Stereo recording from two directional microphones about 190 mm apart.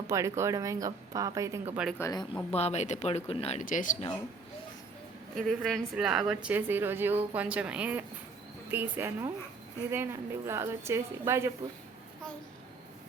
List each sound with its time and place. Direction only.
0.1 s a woman's voice: 15° right (ahead or behind)
2.0 s speech: 20° left (ahead or behind)
2.5 s speech: 35° left (ahead or behind)
5.6 s a woman's voice: centre (ahead or behind)